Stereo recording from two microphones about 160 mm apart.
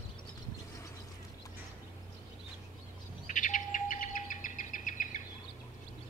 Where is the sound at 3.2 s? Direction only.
55° left (ahead or behind).